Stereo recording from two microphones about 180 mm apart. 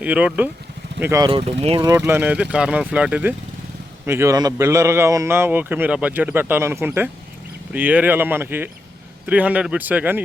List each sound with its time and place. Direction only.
0.0 s a man's voice: 5° right (ahead or behind)
1.2 s speech: 30° right (ahead or behind)
1.8 s a man's voice: 15° right (ahead or behind)